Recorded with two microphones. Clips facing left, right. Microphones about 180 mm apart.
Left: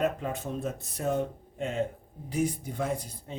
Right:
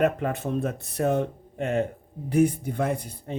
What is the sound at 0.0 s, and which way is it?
Speech, 65° right (ahead or behind).